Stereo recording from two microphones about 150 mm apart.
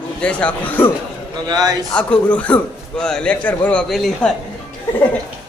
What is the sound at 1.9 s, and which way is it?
A man's voice, 10° left (ahead or behind).